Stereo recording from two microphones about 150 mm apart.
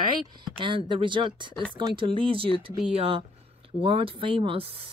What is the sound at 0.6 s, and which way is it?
Speech, 30° right (ahead or behind).